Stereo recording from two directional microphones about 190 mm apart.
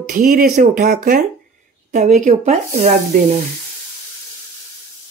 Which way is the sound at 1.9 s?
40° right (ahead or behind).